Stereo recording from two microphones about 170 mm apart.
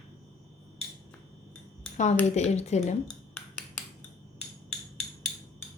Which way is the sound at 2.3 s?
40° left (ahead or behind).